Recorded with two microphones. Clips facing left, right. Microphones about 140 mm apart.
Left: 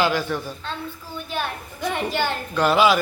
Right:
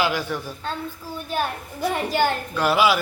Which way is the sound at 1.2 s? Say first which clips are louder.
Right 3 dB; 40° right (ahead or behind).